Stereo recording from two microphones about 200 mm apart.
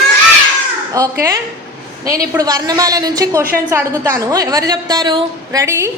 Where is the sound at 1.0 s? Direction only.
15° right (ahead or behind).